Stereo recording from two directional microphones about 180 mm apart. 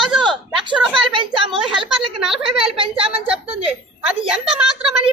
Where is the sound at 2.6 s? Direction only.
30° right (ahead or behind).